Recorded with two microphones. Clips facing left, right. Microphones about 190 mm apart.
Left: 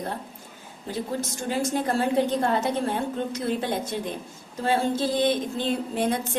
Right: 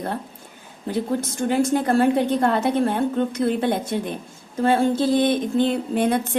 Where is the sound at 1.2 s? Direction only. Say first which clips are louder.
Right 6 dB; 60° right (ahead or behind).